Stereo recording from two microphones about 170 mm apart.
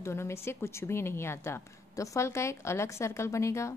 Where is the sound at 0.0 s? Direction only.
15° left (ahead or behind).